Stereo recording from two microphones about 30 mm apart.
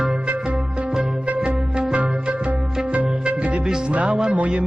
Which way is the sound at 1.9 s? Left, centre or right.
Right.